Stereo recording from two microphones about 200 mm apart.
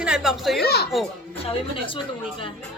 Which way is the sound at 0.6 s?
50° left (ahead or behind).